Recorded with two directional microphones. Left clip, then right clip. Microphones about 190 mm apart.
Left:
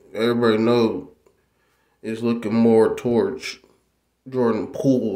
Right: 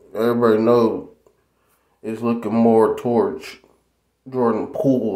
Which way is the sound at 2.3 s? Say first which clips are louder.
Right 1 dB; 25° left (ahead or behind).